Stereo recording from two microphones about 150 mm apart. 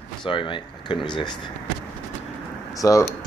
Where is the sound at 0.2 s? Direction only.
35° left (ahead or behind).